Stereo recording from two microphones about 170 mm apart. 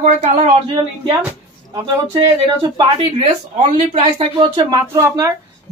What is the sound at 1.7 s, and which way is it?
Speech, 20° right (ahead or behind).